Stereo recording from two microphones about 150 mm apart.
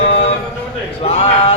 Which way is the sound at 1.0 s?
45° left (ahead or behind).